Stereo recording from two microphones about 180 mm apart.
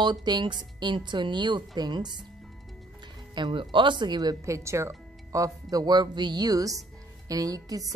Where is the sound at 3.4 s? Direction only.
25° right (ahead or behind).